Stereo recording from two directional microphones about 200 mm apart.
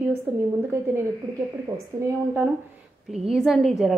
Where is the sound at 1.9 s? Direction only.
10° right (ahead or behind).